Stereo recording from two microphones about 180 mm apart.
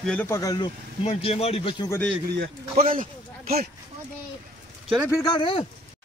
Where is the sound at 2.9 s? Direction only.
50° right (ahead or behind).